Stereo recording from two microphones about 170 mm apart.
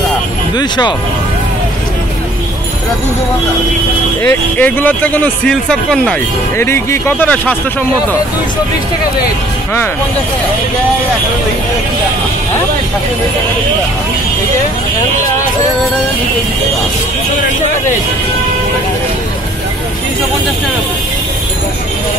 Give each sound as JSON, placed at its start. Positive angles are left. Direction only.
{"t": 0.6, "sound": "speech", "side_deg": 25}
{"t": 4.2, "sound": "speech", "side_deg": 10}
{"t": 6.6, "sound": "speech", "side_deg": 15}